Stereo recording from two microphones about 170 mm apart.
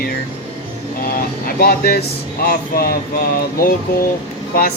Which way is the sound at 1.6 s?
65° left (ahead or behind).